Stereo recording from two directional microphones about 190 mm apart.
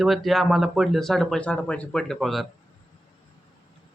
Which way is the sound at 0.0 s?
Centre (ahead or behind).